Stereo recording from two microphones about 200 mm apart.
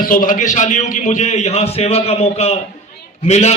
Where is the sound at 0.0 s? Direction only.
40° left (ahead or behind).